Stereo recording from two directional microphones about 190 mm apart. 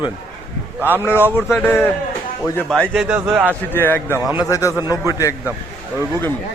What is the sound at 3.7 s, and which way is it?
Speech, 10° left (ahead or behind).